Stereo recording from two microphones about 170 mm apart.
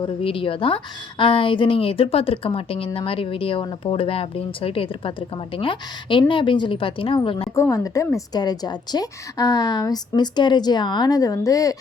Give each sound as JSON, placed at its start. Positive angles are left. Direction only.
{"t": 0.0, "sound": "a woman's voice", "side_deg": 30}
{"t": 7.5, "sound": "a woman's voice", "side_deg": 20}